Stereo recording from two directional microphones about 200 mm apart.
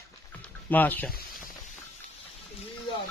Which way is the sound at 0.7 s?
10° left (ahead or behind).